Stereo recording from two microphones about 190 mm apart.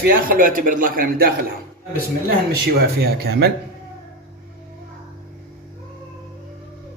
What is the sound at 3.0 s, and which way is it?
Speech, 55° right (ahead or behind).